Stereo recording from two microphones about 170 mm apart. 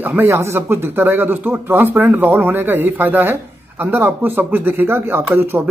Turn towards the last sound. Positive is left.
turn(degrees=-15)  # may be behind; listen again after turning